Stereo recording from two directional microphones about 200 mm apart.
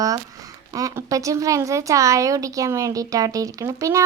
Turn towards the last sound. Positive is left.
turn(degrees=-15)  # may be behind; listen again after turning